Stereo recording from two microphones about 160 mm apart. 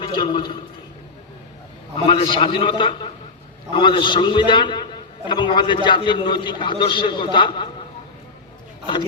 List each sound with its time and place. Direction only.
0.0 s a man's voice: 30° left (ahead or behind)
2.0 s a man's voice: 30° left (ahead or behind)